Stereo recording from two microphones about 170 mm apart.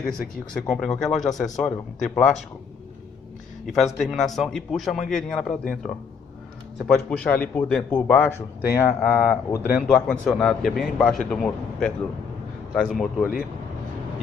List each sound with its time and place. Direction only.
0.5 s a man's voice: centre (ahead or behind)
3.7 s a man's voice: centre (ahead or behind)
6.9 s a man's voice: 5° left (ahead or behind)
9.8 s a man's voice: centre (ahead or behind)